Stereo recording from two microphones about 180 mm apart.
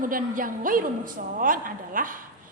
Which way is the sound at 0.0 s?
50° right (ahead or behind).